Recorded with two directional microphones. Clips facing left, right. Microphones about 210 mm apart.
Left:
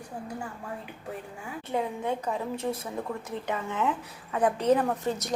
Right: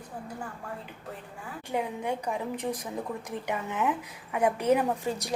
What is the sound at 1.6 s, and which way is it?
A woman's voice, 15° right (ahead or behind).